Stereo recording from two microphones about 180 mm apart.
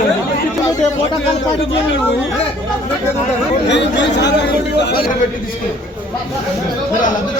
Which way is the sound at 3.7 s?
75° left (ahead or behind).